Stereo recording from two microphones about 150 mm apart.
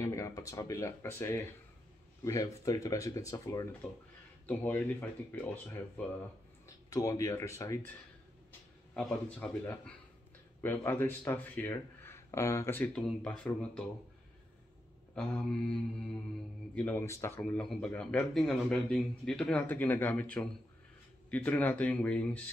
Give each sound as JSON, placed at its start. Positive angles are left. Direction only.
{"t": 0.0, "sound": "speech", "side_deg": 20}
{"t": 4.5, "sound": "speech", "side_deg": 10}
{"t": 6.9, "sound": "speech", "side_deg": 20}
{"t": 8.9, "sound": "mantra", "side_deg": 0}
{"t": 10.6, "sound": "speech", "side_deg": 15}
{"t": 15.1, "sound": "mantra", "side_deg": 5}
{"t": 16.7, "sound": "speech", "side_deg": 10}
{"t": 17.4, "sound": "speech", "side_deg": 5}